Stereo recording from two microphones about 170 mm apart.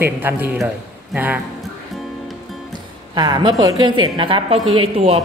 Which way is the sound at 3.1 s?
25° right (ahead or behind).